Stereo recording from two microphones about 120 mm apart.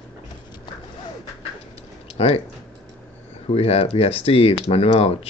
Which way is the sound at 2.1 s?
55° left (ahead or behind).